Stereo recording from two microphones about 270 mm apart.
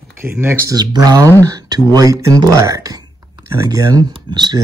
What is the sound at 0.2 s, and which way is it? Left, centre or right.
Speech, centre.